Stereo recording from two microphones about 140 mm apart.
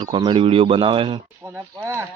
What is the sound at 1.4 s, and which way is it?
Speech, 20° right (ahead or behind).